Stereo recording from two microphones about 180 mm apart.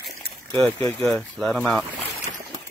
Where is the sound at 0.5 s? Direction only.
15° left (ahead or behind).